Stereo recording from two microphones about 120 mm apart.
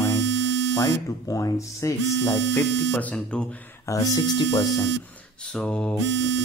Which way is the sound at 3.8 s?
30° left (ahead or behind).